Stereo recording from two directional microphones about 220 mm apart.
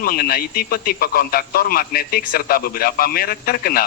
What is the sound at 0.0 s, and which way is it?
A man's voice, 40° left (ahead or behind).